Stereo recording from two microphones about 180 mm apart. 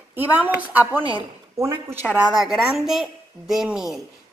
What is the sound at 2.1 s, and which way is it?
A woman's voice, centre (ahead or behind).